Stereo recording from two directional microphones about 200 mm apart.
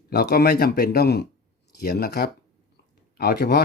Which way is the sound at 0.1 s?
50° left (ahead or behind).